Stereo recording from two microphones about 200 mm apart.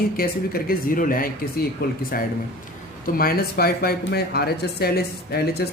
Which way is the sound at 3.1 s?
50° left (ahead or behind).